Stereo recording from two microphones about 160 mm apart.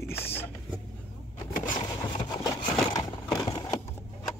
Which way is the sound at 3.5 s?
30° left (ahead or behind).